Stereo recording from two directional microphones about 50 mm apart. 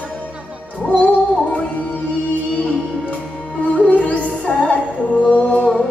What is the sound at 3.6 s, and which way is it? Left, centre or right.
Music, left.